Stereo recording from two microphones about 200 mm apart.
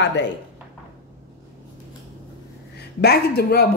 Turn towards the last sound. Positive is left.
turn(degrees=50)  # may be behind; listen again after turning